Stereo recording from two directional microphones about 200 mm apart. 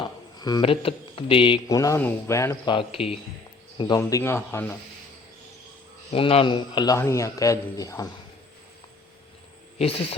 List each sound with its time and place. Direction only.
0.0 s speech: 20° left (ahead or behind)
1.7 s a man's voice: 15° left (ahead or behind)
6.1 s a man's voice: 30° left (ahead or behind)